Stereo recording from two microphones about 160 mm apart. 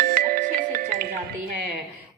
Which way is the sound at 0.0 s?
60° right (ahead or behind).